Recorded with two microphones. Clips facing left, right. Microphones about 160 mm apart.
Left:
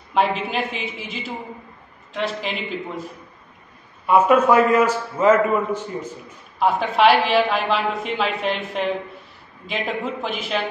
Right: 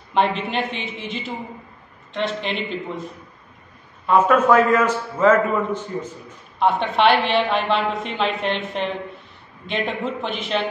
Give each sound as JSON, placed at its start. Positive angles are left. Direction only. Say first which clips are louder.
{"t": 0.1, "sound": "a woman's voice", "louder": "even", "side_deg": 0}
{"t": 4.0, "sound": "a man's voice", "louder": "left 1 dB", "side_deg": 10}